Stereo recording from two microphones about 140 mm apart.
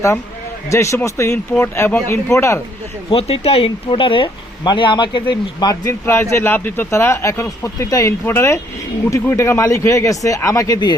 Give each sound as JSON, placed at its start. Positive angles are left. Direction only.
{"t": 0.7, "sound": "speech", "side_deg": 20}
{"t": 3.1, "sound": "speech", "side_deg": 40}